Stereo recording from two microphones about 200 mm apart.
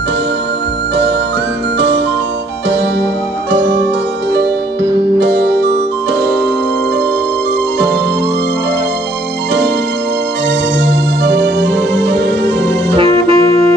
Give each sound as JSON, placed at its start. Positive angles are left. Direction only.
{"t": 5.2, "sound": "music", "side_deg": -55}
{"t": 10.9, "sound": "music", "side_deg": -55}
{"t": 12.9, "sound": "music", "side_deg": -25}